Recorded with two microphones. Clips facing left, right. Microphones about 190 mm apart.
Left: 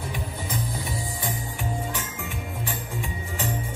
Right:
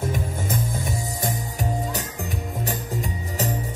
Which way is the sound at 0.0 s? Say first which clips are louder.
Right 6 dB; 45° right (ahead or behind).